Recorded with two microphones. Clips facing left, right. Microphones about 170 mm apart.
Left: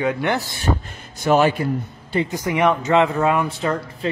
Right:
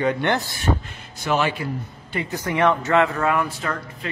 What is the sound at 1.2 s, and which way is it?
Speech, 45° left (ahead or behind).